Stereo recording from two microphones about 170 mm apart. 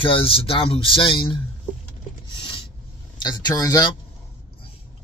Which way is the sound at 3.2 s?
25° left (ahead or behind).